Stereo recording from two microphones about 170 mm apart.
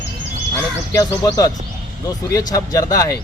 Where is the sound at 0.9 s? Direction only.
20° left (ahead or behind).